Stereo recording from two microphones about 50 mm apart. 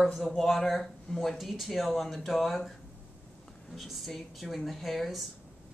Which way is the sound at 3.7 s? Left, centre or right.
Centre.